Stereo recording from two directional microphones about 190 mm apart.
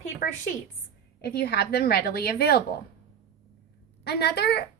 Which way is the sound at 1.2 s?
55° left (ahead or behind).